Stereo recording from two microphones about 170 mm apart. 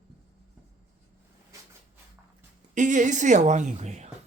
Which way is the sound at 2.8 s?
45° right (ahead or behind).